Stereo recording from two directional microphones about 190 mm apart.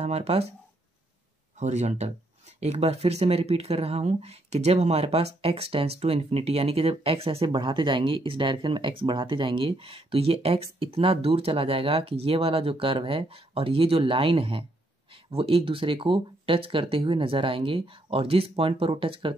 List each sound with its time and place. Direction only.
0.0 s speech: 35° right (ahead or behind)
1.6 s speech: 35° right (ahead or behind)